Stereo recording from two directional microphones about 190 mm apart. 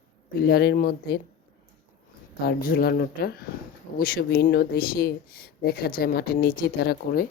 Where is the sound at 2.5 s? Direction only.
55° left (ahead or behind).